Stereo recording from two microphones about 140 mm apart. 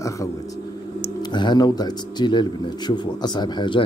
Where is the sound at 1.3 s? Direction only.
30° left (ahead or behind).